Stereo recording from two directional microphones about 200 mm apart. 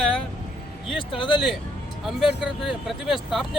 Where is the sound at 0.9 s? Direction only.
25° left (ahead or behind).